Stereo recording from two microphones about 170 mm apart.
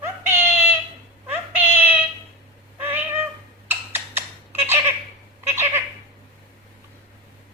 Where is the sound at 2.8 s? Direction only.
10° right (ahead or behind).